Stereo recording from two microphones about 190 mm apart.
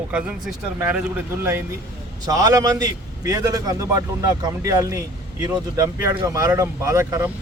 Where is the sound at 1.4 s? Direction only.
10° right (ahead or behind).